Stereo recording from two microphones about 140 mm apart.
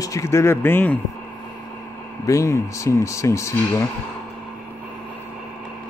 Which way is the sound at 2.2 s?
20° left (ahead or behind).